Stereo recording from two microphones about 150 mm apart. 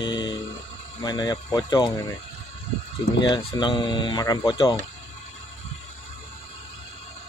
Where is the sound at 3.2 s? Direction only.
30° left (ahead or behind).